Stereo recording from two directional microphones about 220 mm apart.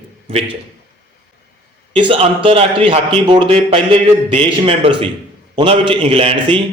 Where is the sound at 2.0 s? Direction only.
25° right (ahead or behind).